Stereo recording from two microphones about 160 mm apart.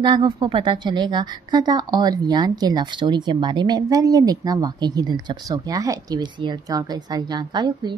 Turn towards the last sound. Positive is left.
turn(degrees=-25)  # may be behind; listen again after turning